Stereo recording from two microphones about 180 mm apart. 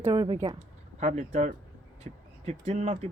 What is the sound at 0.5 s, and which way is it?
Speech, 35° right (ahead or behind).